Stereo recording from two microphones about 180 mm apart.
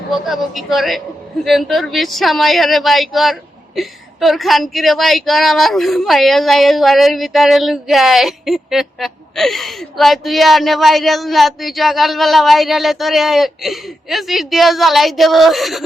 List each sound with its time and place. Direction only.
0.1 s a woman's voice: centre (ahead or behind)